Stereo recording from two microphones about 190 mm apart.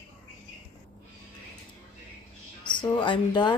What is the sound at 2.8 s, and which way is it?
Speech, 25° left (ahead or behind).